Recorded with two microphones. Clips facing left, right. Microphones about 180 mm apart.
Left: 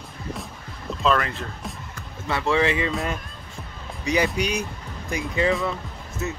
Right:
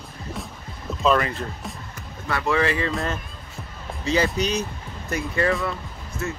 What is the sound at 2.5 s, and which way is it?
Speech, 20° left (ahead or behind).